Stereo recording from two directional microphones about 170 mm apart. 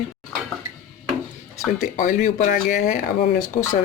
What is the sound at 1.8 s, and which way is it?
Speech, 50° left (ahead or behind).